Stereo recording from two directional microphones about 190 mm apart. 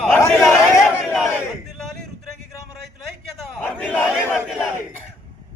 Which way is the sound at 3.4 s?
5° left (ahead or behind).